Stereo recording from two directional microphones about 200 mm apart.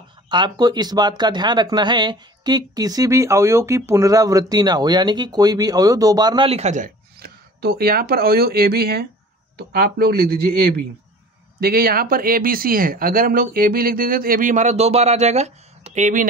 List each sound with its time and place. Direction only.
0.3 s speech: 20° right (ahead or behind); by 16.3 s 40° right (ahead or behind)